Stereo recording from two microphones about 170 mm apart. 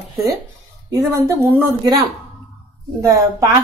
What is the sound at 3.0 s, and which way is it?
Speech, 20° right (ahead or behind).